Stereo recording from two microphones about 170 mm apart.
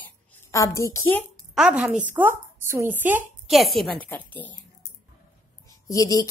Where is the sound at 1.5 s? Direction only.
5° right (ahead or behind).